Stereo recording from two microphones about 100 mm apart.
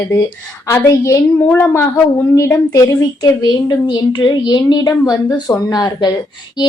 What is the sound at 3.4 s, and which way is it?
A woman's voice, 50° left (ahead or behind).